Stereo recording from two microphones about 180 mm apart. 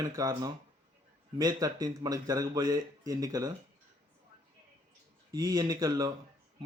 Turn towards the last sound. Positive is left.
turn(degrees=-20)  # may be behind; listen again after turning